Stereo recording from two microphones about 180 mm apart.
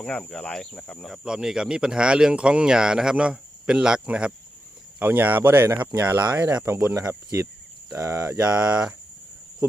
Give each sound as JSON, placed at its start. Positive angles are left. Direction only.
{"t": 0.0, "sound": "speech", "side_deg": 5}
{"t": 8.4, "sound": "speech", "side_deg": -5}